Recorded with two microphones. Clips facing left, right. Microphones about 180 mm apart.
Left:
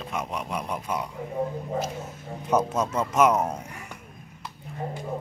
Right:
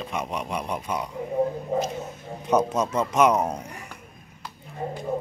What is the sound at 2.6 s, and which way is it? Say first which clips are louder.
Speech: right 2 dB; 15° right (ahead or behind).